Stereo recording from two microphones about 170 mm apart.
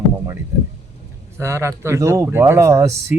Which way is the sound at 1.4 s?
15° right (ahead or behind).